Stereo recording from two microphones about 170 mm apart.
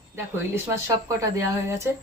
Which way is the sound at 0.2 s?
15° right (ahead or behind).